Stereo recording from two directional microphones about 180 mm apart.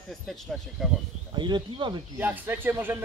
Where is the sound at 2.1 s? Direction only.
10° right (ahead or behind).